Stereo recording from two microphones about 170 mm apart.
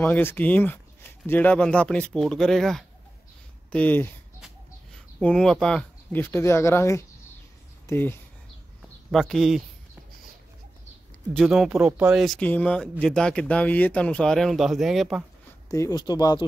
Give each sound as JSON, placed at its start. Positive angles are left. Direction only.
{"t": 0.0, "sound": "speech", "side_deg": 10}
{"t": 9.1, "sound": "speech", "side_deg": 0}
{"t": 11.3, "sound": "speech", "side_deg": 0}
{"t": 15.7, "sound": "speech", "side_deg": 20}